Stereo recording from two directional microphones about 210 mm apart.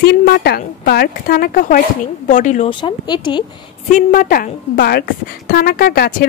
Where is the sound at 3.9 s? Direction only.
40° left (ahead or behind).